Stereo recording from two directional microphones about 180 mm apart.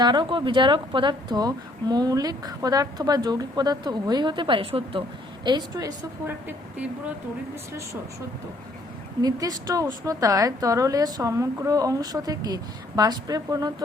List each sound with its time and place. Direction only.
0.0 s a woman's voice: 25° right (ahead or behind)
9.2 s a woman's voice: 20° right (ahead or behind)